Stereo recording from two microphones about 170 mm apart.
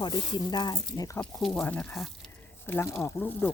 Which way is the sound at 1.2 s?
Centre (ahead or behind).